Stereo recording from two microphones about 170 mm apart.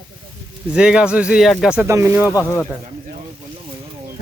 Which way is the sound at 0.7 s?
5° right (ahead or behind).